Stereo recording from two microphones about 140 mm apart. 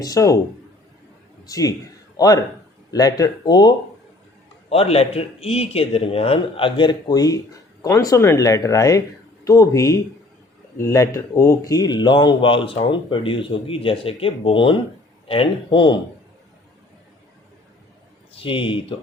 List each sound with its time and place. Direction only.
0.0 s speech: 25° left (ahead or behind)
1.5 s a man's voice: 25° left (ahead or behind)
4.7 s a man's voice: 45° left (ahead or behind)
18.3 s speech: 40° left (ahead or behind)